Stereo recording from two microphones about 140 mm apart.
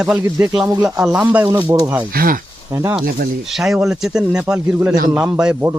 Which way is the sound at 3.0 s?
90° right.